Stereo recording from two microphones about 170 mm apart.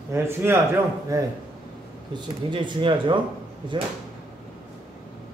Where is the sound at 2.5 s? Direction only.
30° right (ahead or behind).